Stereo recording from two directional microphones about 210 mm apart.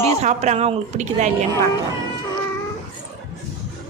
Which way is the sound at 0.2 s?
30° right (ahead or behind).